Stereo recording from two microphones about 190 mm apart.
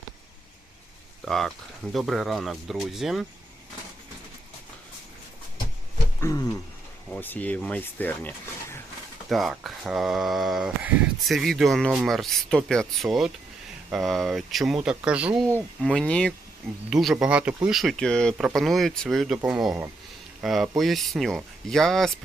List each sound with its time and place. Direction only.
1.2 s speech: centre (ahead or behind)
6.1 s a sound: 15° left (ahead or behind)
7.2 s speech: 10° left (ahead or behind); by 15.6 s 10° right (ahead or behind)
15.8 s speech: 5° left (ahead or behind)